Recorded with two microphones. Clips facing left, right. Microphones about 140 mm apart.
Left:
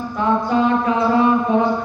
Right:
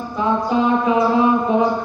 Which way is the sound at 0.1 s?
15° right (ahead or behind).